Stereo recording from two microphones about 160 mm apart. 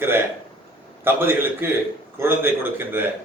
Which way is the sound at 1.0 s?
15° right (ahead or behind).